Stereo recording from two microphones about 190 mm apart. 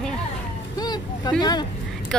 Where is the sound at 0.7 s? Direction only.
20° left (ahead or behind).